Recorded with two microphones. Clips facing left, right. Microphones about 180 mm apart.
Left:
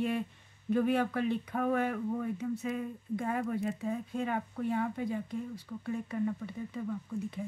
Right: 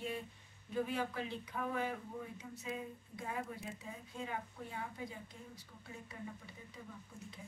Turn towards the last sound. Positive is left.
turn(degrees=60)  # may be behind; listen again after turning